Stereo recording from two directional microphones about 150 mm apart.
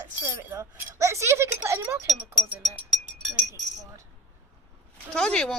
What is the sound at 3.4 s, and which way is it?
Chink, 20° right (ahead or behind).